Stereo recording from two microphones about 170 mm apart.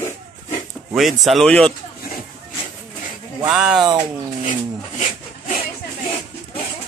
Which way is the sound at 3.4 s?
5° right (ahead or behind).